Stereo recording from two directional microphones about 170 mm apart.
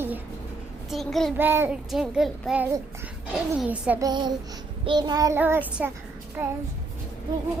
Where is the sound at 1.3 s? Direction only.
15° right (ahead or behind).